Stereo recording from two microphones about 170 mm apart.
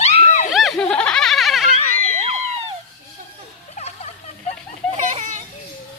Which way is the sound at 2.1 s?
40° right (ahead or behind).